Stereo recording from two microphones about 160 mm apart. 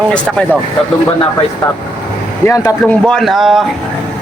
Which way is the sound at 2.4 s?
15° left (ahead or behind).